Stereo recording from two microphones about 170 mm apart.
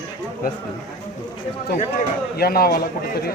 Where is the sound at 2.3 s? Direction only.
65° left (ahead or behind).